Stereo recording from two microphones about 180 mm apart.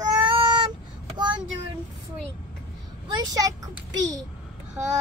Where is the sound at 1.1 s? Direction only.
25° right (ahead or behind).